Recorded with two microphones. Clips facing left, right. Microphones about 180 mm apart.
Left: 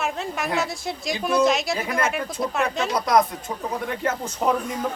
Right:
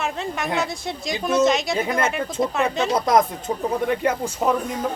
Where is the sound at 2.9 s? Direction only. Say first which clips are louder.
Even; 25° right (ahead or behind).